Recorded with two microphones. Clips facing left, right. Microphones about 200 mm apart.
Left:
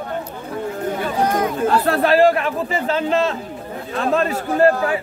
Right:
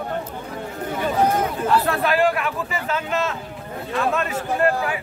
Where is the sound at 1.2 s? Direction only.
5° right (ahead or behind).